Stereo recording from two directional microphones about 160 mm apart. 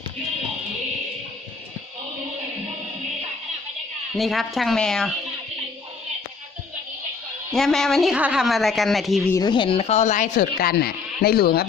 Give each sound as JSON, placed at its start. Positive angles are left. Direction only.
{"t": 4.1, "sound": "a woman's voice", "side_deg": 0}
{"t": 7.5, "sound": "a woman's voice", "side_deg": 0}
{"t": 9.3, "sound": "speech", "side_deg": 25}